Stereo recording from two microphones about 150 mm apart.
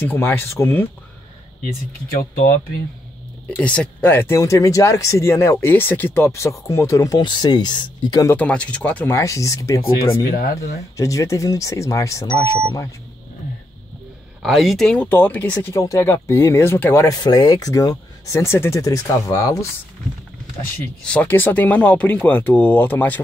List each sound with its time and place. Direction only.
0.0 s speech: 15° left (ahead or behind)
1.6 s speech: 70° left (ahead or behind)
3.4 s speech: 10° left (ahead or behind); by 8.4 s 25° left (ahead or behind)
8.4 s speech: 10° left (ahead or behind)
11.0 s speech: 20° left (ahead or behind)
14.4 s speech: centre (ahead or behind); by 19.7 s 20° left (ahead or behind)
21.0 s speech: 10° left (ahead or behind)